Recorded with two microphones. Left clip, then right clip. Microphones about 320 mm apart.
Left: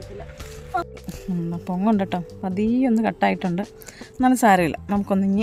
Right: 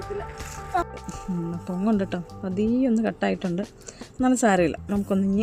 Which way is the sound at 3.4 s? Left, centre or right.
Centre.